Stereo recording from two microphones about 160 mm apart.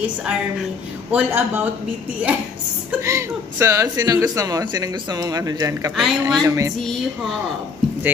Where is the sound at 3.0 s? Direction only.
15° right (ahead or behind).